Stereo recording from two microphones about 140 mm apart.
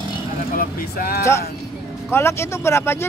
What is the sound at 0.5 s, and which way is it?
Speech, 90° left.